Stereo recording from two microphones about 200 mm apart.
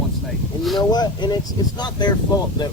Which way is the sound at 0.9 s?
20° left (ahead or behind).